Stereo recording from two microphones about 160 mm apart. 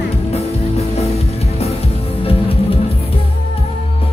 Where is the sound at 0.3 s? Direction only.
40° left (ahead or behind).